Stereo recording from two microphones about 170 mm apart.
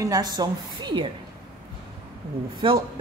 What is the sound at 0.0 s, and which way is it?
A woman's voice, 20° right (ahead or behind).